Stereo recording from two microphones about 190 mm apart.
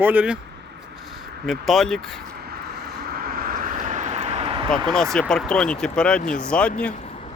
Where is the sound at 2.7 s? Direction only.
55° right (ahead or behind); by 4.7 s 30° right (ahead or behind).